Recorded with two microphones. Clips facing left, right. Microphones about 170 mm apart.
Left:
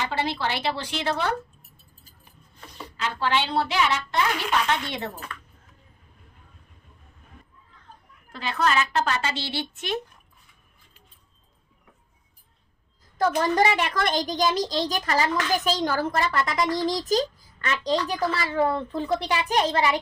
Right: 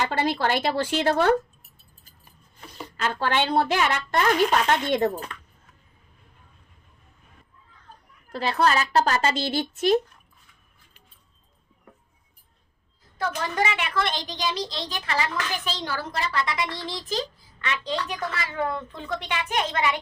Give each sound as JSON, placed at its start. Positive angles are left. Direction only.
{"t": 0.0, "sound": "a woman's voice", "side_deg": -45}
{"t": 3.0, "sound": "a woman's voice", "side_deg": -50}
{"t": 8.3, "sound": "a woman's voice", "side_deg": -35}
{"t": 13.4, "sound": "a woman's voice", "side_deg": 40}